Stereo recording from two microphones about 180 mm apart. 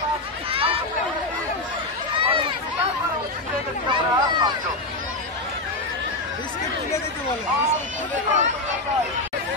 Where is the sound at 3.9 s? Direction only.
25° right (ahead or behind).